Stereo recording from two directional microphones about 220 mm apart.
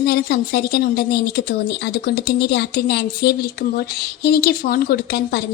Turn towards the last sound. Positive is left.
turn(degrees=50)  # may be behind; listen again after turning